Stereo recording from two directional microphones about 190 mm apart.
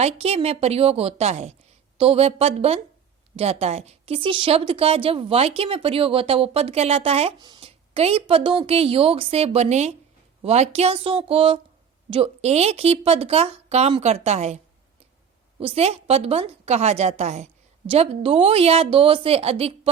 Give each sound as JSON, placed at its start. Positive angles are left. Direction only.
{"t": 0.0, "sound": "a woman's voice", "side_deg": -30}